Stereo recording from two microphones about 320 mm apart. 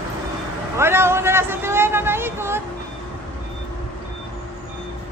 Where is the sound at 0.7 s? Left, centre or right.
Centre.